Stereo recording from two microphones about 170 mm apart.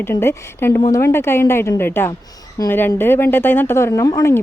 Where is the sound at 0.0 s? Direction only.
15° left (ahead or behind).